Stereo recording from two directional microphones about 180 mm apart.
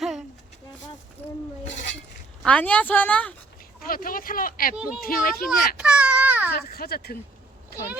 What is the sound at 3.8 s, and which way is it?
Speech, 50° left (ahead or behind).